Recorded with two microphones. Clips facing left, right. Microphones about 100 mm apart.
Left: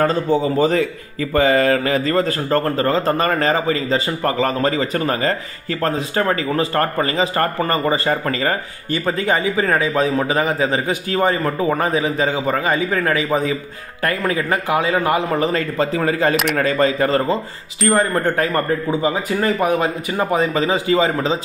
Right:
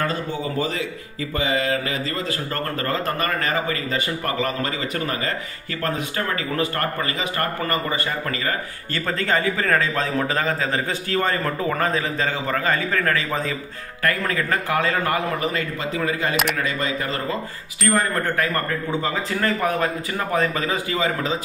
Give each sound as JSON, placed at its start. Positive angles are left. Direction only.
{"t": 0.0, "sound": "speech", "side_deg": 40}
{"t": 2.8, "sound": "a man's voice", "side_deg": 25}
{"t": 8.9, "sound": "a man's voice", "side_deg": 15}
{"t": 15.3, "sound": "a man's voice", "side_deg": 35}
{"t": 17.8, "sound": "speech", "side_deg": 20}